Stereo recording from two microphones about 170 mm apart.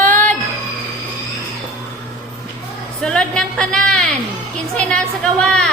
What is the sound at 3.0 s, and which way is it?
Speech, 5° left (ahead or behind).